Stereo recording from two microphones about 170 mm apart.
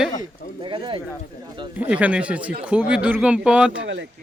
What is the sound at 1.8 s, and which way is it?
A man's voice, 10° right (ahead or behind).